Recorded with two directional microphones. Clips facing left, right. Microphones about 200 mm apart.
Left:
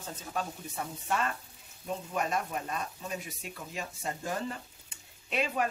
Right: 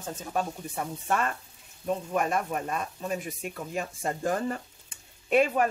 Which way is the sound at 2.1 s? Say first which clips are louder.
Right 3 dB; 55° right (ahead or behind).